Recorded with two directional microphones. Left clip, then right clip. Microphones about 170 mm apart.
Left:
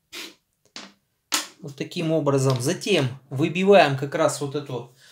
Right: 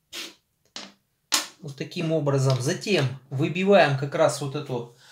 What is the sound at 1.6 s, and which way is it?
Speech, 30° left (ahead or behind).